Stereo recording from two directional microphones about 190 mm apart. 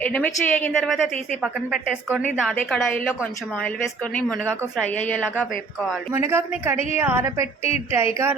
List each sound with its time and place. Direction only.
0.0 s a woman's voice: 5° left (ahead or behind)
0.7 s a woman's voice: centre (ahead or behind)
6.1 s a woman's voice: 10° right (ahead or behind)
7.6 s a woman's voice: 30° left (ahead or behind)
7.9 s a woman's voice: 15° right (ahead or behind)